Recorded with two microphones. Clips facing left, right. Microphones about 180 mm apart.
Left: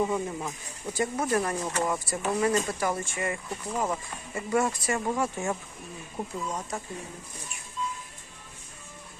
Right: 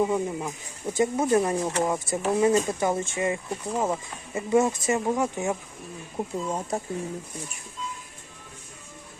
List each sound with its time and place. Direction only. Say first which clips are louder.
0.0 s speech: right 3 dB; 10° right (ahead or behind)
0.9 s speech: right 5 dB; 25° right (ahead or behind)
6.5 s speech: right 5 dB; 30° right (ahead or behind)